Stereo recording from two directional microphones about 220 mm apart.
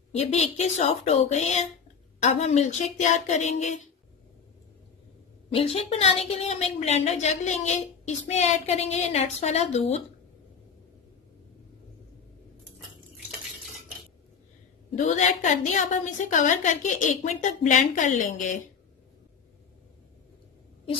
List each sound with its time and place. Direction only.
0.1 s a woman's voice: 30° left (ahead or behind)
5.5 s a woman's voice: 25° left (ahead or behind)
15.0 s a woman's voice: 35° left (ahead or behind)